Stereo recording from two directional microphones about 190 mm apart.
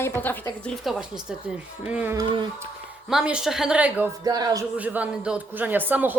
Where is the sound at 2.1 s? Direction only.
25° right (ahead or behind).